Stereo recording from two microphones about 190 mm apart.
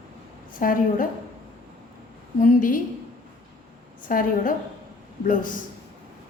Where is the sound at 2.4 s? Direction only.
45° left (ahead or behind).